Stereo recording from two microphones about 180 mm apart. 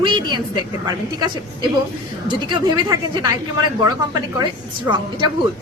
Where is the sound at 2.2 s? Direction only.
25° right (ahead or behind).